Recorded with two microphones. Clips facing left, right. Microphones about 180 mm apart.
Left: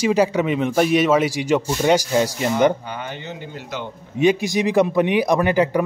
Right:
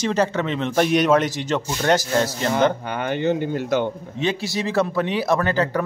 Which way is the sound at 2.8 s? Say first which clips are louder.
Right 9 dB; 60° right (ahead or behind).